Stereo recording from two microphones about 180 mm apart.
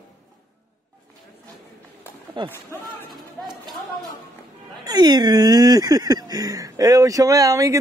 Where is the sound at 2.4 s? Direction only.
25° right (ahead or behind).